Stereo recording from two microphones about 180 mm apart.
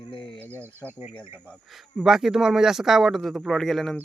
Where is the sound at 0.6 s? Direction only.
10° right (ahead or behind).